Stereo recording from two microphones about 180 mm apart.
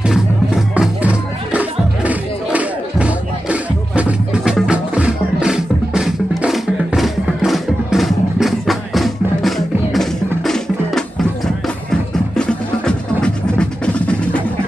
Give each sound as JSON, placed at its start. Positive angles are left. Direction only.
{"t": 0.0, "sound": "music", "side_deg": -5}
{"t": 12.4, "sound": "music", "side_deg": 5}